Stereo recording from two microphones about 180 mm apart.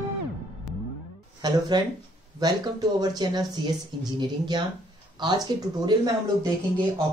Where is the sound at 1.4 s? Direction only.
25° right (ahead or behind).